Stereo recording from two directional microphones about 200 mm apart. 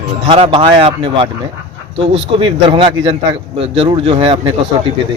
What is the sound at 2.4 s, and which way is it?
Speech, 25° right (ahead or behind).